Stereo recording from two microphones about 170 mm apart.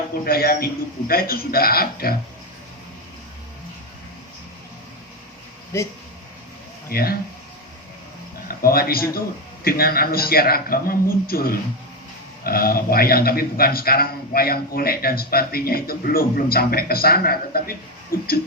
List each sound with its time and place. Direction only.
0.3 s a man's voice: 60° left (ahead or behind)
5.7 s speech: 15° left (ahead or behind)
6.9 s a man's voice: 65° left (ahead or behind)
8.4 s a man's voice: 60° left (ahead or behind)